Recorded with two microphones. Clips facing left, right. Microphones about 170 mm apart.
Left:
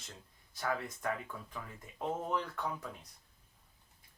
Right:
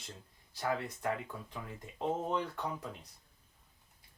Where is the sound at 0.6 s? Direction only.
25° right (ahead or behind).